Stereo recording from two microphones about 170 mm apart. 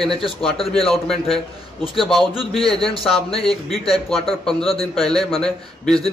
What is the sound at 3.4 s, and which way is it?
A man's voice, centre (ahead or behind).